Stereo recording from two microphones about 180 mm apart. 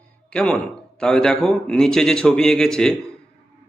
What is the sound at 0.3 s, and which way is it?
Speech, 5° left (ahead or behind).